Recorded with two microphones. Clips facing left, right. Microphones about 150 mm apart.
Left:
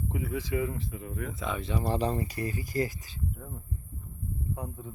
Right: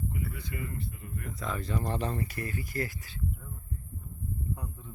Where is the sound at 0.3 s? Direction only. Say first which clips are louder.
Left 8 dB; 90° left.